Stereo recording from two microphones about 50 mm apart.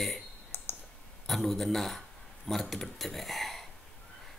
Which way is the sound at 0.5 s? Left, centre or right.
Left.